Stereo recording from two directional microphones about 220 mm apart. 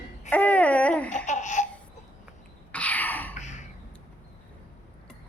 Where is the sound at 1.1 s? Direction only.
35° left (ahead or behind).